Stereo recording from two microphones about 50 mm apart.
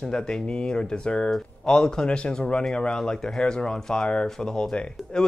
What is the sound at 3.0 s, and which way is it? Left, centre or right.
Speech, centre.